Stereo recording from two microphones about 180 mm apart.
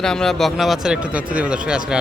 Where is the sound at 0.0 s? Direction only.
5° left (ahead or behind).